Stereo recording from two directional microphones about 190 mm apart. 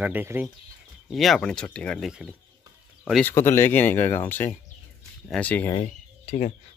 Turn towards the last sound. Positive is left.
turn(degrees=35)  # may be behind; listen again after turning